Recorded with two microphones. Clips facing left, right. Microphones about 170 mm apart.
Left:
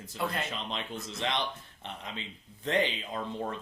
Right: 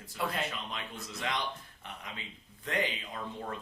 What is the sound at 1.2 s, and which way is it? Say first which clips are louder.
Speech: left 3 dB; 25° left (ahead or behind).